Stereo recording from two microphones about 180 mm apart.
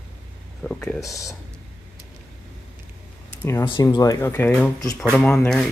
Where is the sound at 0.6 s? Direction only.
5° left (ahead or behind).